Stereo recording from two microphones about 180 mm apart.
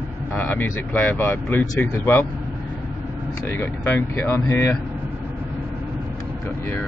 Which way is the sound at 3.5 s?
10° left (ahead or behind).